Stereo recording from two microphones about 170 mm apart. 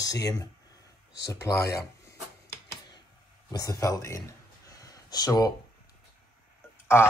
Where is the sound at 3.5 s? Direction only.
20° left (ahead or behind).